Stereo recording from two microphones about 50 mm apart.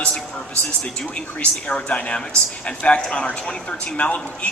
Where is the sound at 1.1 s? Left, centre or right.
Left.